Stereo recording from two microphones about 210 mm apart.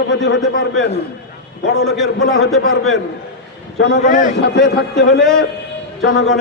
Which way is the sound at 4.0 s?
40° left (ahead or behind).